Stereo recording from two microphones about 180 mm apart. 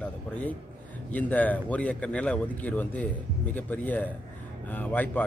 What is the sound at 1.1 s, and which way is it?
A man's voice, 10° left (ahead or behind).